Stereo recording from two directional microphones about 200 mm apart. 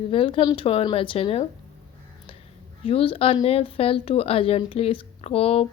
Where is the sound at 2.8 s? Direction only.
30° left (ahead or behind).